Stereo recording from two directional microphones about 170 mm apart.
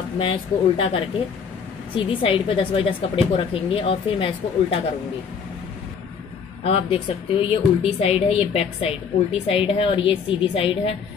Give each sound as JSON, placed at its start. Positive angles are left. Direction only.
{"t": 0.2, "sound": "a woman's voice", "side_deg": 30}
{"t": 6.6, "sound": "a woman's voice", "side_deg": 35}